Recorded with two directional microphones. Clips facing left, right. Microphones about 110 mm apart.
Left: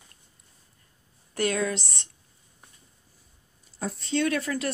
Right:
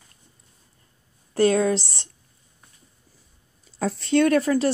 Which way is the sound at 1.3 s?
30° right (ahead or behind).